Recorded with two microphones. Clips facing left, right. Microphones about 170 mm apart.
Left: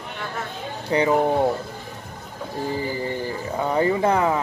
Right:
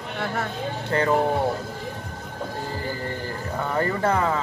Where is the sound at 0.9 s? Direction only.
15° left (ahead or behind).